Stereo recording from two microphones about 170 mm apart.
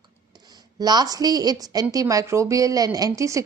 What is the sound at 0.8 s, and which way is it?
Speech, 25° right (ahead or behind).